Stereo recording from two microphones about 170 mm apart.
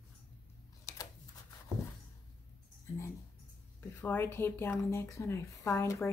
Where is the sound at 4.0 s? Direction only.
10° left (ahead or behind).